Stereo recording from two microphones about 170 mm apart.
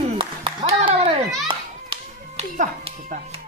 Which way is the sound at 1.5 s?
30° right (ahead or behind).